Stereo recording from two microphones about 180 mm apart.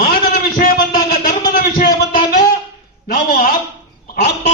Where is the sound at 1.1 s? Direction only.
50° left (ahead or behind).